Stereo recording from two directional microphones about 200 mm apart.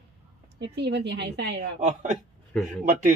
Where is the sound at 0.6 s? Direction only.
55° right (ahead or behind).